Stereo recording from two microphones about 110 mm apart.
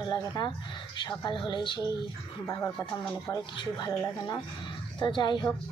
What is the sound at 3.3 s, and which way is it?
Speech, 40° left (ahead or behind).